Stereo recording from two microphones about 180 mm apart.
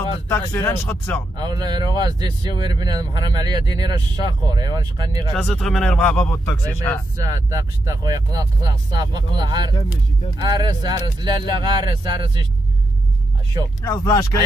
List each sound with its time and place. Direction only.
0.3 s speech: 10° left (ahead or behind)
1.3 s speech: 25° right (ahead or behind)
5.3 s speech: 5° left (ahead or behind)
7.2 s speech: 20° right (ahead or behind)
13.8 s speech: 20° left (ahead or behind)